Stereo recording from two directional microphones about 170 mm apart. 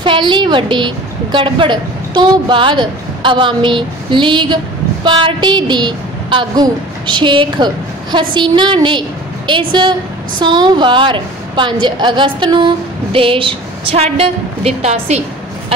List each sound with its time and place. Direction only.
0.0 s a woman's voice: 30° right (ahead or behind)